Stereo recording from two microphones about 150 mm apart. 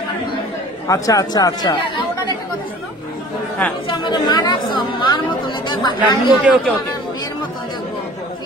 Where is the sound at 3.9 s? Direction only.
30° left (ahead or behind).